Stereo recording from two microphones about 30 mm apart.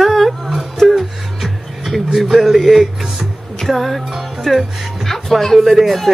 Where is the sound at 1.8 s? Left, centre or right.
Centre.